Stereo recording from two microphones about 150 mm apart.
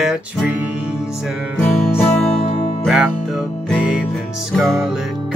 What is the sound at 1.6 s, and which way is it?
Music, 5° left (ahead or behind).